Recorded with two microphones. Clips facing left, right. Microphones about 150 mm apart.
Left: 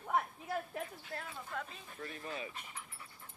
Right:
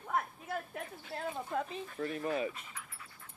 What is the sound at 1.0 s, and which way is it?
Speech, 30° right (ahead or behind).